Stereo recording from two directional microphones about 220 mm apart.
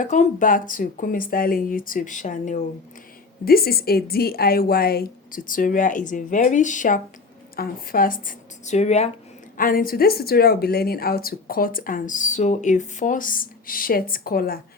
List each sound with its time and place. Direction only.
0.0 s speech: 35° left (ahead or behind)